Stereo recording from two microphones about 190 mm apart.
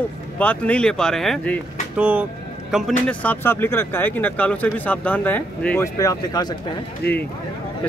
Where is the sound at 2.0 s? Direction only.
5° right (ahead or behind).